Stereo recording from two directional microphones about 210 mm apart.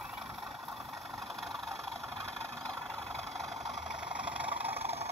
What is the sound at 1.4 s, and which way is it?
Vehicle, centre (ahead or behind).